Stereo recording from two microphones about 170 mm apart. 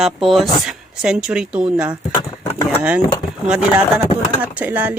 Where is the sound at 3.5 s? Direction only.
5° right (ahead or behind).